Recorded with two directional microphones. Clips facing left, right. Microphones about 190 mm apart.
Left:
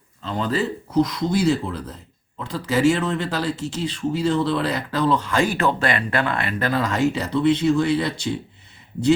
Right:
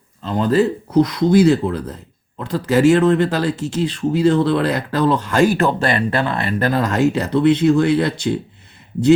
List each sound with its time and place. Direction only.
0.2 s speech: 45° right (ahead or behind)
1.0 s speech: 60° right (ahead or behind)